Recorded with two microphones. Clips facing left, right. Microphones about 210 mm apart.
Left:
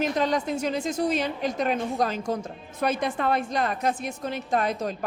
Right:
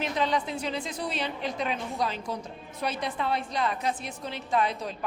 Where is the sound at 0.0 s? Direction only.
45° left (ahead or behind).